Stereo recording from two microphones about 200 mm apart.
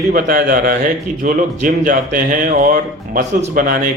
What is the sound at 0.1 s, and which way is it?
Speech, 45° right (ahead or behind).